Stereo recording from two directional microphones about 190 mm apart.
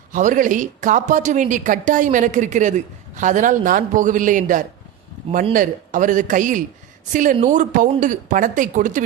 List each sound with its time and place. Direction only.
0.1 s speech: 40° right (ahead or behind)